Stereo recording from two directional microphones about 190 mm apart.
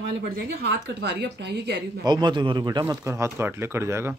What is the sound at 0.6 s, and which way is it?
A woman's voice, 60° right (ahead or behind).